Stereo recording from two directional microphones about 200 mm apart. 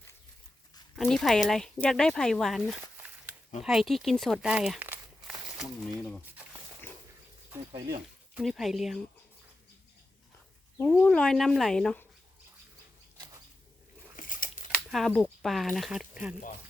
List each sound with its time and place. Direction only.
0.9 s speech: centre (ahead or behind)
2.8 s walk: 10° right (ahead or behind)
3.6 s speech: centre (ahead or behind)
6.8 s dog: 10° left (ahead or behind)
7.5 s speech: 20° right (ahead or behind)
8.4 s speech: centre (ahead or behind)
10.8 s speech: 10° left (ahead or behind)
13.1 s a sound: 20° right (ahead or behind)
14.2 s a sound: 45° left (ahead or behind)
14.7 s speech: centre (ahead or behind)